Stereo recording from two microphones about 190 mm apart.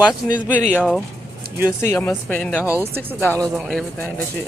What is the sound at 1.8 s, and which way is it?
Speech, 10° left (ahead or behind).